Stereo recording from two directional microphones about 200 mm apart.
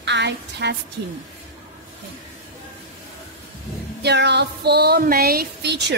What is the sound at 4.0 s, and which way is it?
A woman's voice, 55° right (ahead or behind).